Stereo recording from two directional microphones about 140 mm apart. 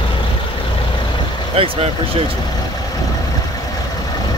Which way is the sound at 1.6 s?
40° right (ahead or behind).